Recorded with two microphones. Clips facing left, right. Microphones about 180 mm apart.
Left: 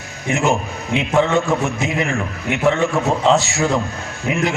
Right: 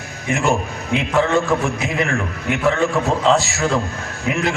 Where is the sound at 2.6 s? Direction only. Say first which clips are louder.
Left 1 dB; 20° left (ahead or behind).